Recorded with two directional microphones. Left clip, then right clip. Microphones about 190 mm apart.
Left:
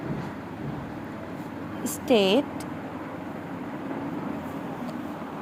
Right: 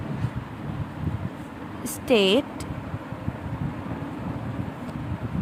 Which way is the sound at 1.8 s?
15° right (ahead or behind).